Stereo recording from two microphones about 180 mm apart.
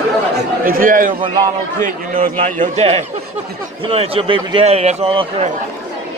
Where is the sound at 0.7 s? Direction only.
50° right (ahead or behind).